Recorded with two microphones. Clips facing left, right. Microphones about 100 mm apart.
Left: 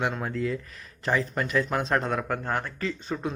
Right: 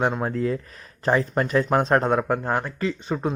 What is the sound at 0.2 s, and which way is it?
Speech, 35° right (ahead or behind).